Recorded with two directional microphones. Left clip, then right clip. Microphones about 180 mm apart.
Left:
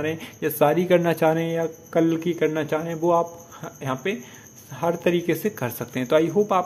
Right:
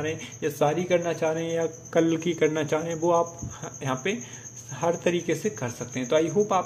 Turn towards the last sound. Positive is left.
turn(degrees=15)  # may be behind; listen again after turning